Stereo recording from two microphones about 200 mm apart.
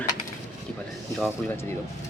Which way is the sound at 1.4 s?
10° left (ahead or behind).